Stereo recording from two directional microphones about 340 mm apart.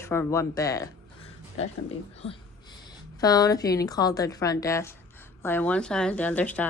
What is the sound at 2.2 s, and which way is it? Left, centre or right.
A woman's voice, centre.